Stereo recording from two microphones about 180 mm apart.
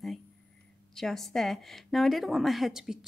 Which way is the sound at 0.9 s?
Centre (ahead or behind).